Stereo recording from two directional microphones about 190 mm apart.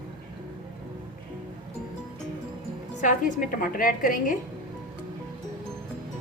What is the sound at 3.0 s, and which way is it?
A woman's voice, 40° left (ahead or behind).